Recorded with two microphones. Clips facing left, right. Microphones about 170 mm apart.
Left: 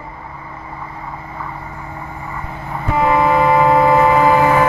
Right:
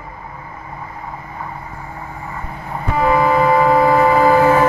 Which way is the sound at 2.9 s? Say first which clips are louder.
Even; 25° left (ahead or behind).